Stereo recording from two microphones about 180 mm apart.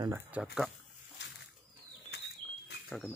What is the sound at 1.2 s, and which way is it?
Bird, 80° left.